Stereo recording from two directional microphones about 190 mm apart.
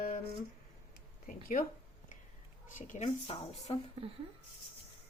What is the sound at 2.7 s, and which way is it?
A woman's voice, 40° left (ahead or behind).